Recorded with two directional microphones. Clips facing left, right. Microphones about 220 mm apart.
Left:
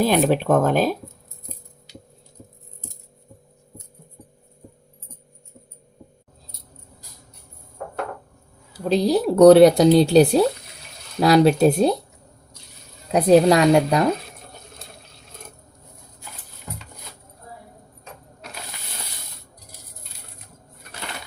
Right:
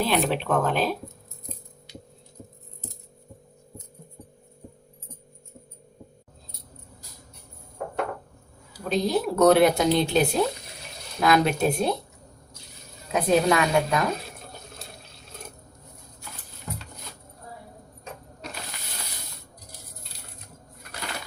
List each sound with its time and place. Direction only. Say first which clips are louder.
0.0 s speech: left 6 dB; 45° left (ahead or behind)
8.9 s speech: left 6 dB; 35° left (ahead or behind)
13.1 s speech: left 7 dB; 35° left (ahead or behind)